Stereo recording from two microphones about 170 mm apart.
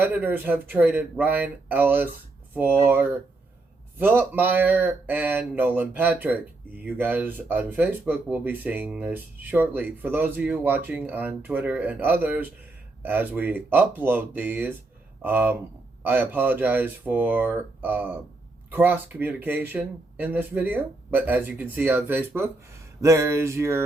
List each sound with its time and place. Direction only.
0.0 s speech: 10° right (ahead or behind)